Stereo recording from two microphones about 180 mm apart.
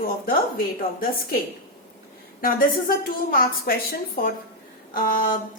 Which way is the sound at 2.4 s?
55° left (ahead or behind).